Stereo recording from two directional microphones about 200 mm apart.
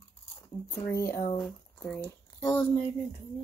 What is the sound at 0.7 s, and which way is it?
A child's voice, 15° left (ahead or behind).